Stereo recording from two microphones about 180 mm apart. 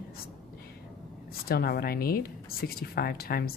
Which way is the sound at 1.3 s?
60° left (ahead or behind).